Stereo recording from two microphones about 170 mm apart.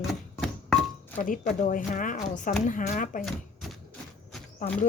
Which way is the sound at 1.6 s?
50° left (ahead or behind).